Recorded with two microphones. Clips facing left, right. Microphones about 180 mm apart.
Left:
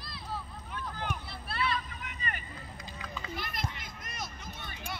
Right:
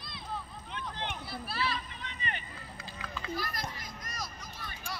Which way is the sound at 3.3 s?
25° left (ahead or behind).